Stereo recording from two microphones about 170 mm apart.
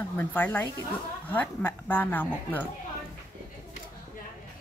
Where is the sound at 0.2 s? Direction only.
10° left (ahead or behind).